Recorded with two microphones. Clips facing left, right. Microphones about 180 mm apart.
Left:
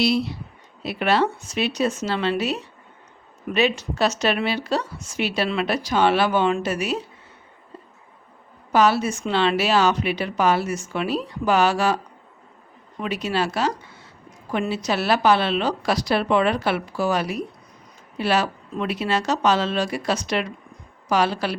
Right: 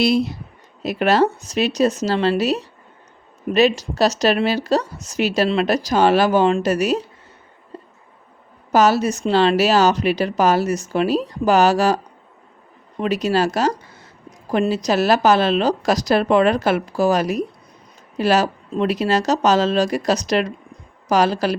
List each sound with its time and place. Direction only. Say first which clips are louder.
0.0 s a woman's voice: right 4 dB; 45° right (ahead or behind)
8.7 s a woman's voice: right 3 dB; 40° right (ahead or behind)
13.0 s a woman's voice: right 6 dB; 40° right (ahead or behind)